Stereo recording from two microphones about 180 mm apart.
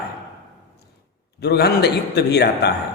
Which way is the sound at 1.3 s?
65° left (ahead or behind).